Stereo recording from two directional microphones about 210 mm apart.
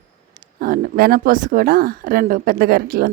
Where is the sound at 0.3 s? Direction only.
45° right (ahead or behind).